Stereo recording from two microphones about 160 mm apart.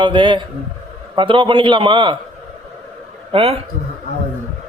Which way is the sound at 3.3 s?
35° right (ahead or behind).